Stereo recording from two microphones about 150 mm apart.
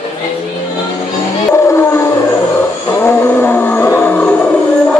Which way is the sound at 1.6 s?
20° left (ahead or behind).